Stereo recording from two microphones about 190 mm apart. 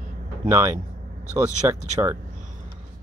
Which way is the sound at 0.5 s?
15° right (ahead or behind).